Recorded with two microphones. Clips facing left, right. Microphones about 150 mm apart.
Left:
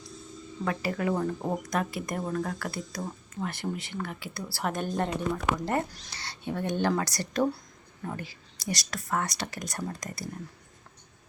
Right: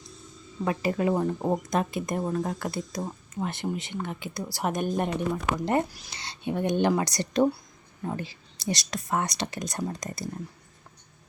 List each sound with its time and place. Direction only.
0.6 s speech: 20° right (ahead or behind)
8.0 s speech: 25° right (ahead or behind)